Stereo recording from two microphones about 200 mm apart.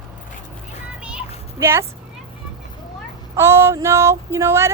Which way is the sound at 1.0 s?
10° right (ahead or behind).